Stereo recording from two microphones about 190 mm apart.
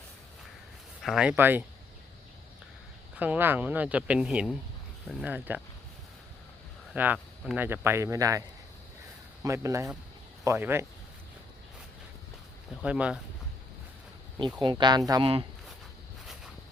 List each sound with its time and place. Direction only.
1.0 s speech: 5° right (ahead or behind)
3.2 s speech: 10° right (ahead or behind)
6.9 s speech: 10° right (ahead or behind)
12.8 s speech: 5° right (ahead or behind)
14.6 s speech: 25° right (ahead or behind)